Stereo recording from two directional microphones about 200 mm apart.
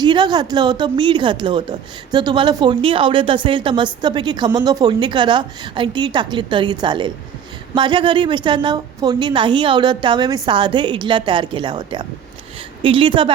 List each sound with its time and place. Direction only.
0.0 s a woman's voice: 20° right (ahead or behind)